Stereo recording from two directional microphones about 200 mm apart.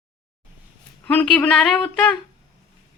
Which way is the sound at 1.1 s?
10° left (ahead or behind).